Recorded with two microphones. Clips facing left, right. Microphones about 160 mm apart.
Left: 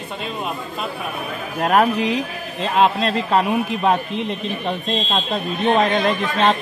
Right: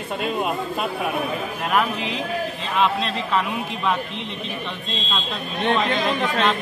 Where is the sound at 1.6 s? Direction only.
45° left (ahead or behind).